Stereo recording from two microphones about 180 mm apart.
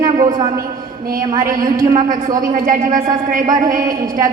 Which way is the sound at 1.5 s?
50° right (ahead or behind).